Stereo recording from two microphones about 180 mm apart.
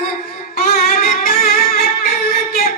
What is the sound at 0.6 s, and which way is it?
Music, 55° left (ahead or behind).